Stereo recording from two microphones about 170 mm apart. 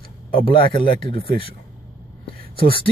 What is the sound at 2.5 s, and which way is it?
Speech, 30° left (ahead or behind).